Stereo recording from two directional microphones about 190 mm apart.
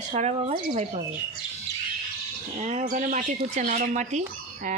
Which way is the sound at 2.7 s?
40° right (ahead or behind).